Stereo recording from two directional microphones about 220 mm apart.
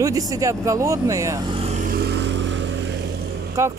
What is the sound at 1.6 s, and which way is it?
Vehicle, 30° right (ahead or behind).